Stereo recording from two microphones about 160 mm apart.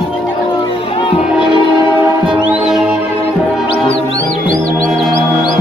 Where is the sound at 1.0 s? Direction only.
30° left (ahead or behind).